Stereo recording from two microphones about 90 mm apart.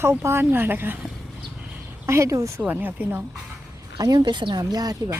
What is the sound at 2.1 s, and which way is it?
Speech, 35° right (ahead or behind).